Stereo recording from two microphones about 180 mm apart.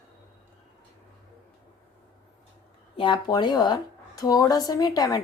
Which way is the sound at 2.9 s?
25° left (ahead or behind).